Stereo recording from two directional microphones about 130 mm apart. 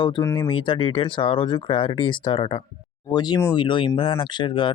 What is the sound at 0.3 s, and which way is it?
Speech, 40° left (ahead or behind).